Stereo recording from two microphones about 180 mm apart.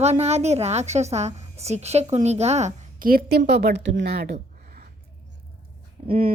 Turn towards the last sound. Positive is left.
turn(degrees=-35)  # may be behind; listen again after turning